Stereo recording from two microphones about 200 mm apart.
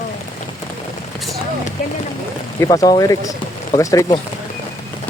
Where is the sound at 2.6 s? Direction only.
20° left (ahead or behind).